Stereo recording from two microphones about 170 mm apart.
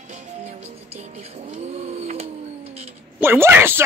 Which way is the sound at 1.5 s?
40° right (ahead or behind).